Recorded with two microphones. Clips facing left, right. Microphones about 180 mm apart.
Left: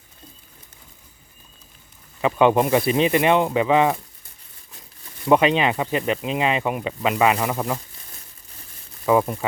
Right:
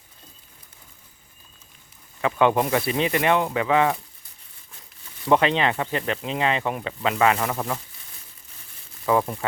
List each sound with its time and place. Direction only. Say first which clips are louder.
2.2 s speech: left 3 dB; 20° left (ahead or behind)
5.3 s speech: left 3 dB; 10° left (ahead or behind)
9.0 s speech: left 3 dB; 10° left (ahead or behind)